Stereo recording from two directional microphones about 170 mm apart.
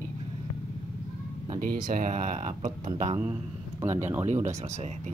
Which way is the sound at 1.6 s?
55° right (ahead or behind).